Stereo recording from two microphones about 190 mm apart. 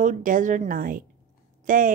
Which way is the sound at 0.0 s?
45° right (ahead or behind).